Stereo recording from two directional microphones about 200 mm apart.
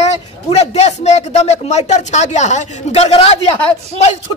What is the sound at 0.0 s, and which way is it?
A man's voice, 30° left (ahead or behind).